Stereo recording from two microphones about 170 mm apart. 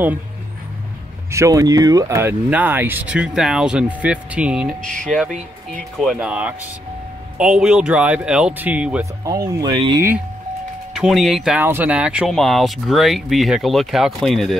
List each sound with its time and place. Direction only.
1.3 s speech: 20° right (ahead or behind)
9.2 s speech: 20° right (ahead or behind)
10.9 s speech: centre (ahead or behind)